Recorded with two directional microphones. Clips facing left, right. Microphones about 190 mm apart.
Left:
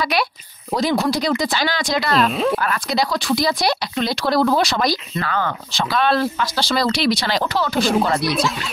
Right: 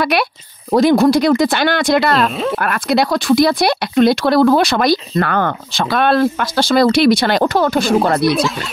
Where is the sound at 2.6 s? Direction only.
60° right (ahead or behind).